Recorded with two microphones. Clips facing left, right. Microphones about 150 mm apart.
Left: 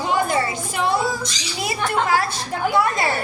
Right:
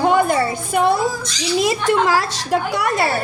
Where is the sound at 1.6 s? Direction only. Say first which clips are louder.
Right 4 dB; 85° right.